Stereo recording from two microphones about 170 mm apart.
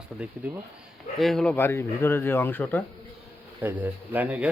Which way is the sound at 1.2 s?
Centre (ahead or behind).